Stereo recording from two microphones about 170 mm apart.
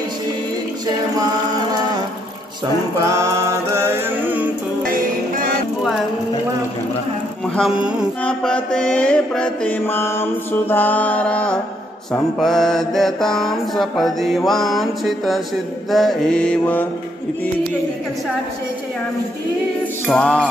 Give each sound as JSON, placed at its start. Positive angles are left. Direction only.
{"t": 2.6, "sound": "music", "side_deg": -20}
{"t": 4.8, "sound": "music", "side_deg": -55}
{"t": 8.2, "sound": "mantra", "side_deg": 5}
{"t": 20.1, "sound": "mantra", "side_deg": 5}